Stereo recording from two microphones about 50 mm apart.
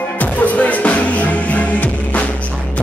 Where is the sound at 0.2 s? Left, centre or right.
Left.